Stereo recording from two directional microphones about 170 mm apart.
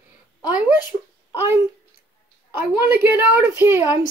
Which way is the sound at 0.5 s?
10° right (ahead or behind).